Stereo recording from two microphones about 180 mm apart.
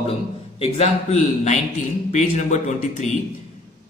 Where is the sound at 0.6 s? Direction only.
35° left (ahead or behind).